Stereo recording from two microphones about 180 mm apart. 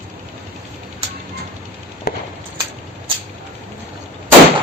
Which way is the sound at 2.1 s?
55° left (ahead or behind).